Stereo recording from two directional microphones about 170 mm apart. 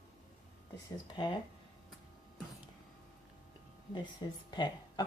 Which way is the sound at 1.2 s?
25° left (ahead or behind).